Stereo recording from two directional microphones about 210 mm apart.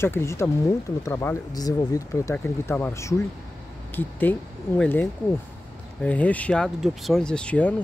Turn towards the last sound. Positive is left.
turn(degrees=5)  # may be behind; listen again after turning